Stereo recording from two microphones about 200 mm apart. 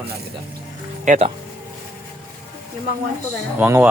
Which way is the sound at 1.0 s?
35° right (ahead or behind).